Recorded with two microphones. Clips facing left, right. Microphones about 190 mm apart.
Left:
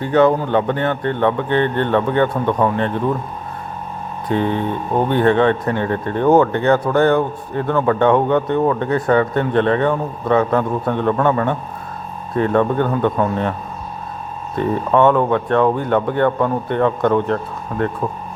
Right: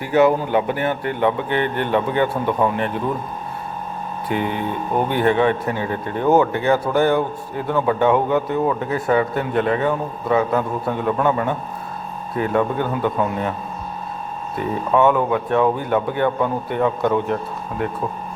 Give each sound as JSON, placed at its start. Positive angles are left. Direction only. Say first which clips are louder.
{"t": 0.1, "sound": "speech", "louder": "left 1 dB", "side_deg": -10}
{"t": 1.5, "sound": "speech", "louder": "left 4 dB", "side_deg": 30}
{"t": 1.8, "sound": "speech", "louder": "left 3 dB", "side_deg": -10}
{"t": 4.4, "sound": "speech", "louder": "left 3 dB", "side_deg": 30}
{"t": 5.2, "sound": "speech", "louder": "left 2 dB", "side_deg": -10}
{"t": 14.9, "sound": "speech", "louder": "left 2 dB", "side_deg": -5}